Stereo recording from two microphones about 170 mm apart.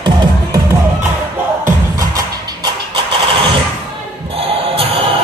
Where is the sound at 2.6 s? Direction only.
25° right (ahead or behind).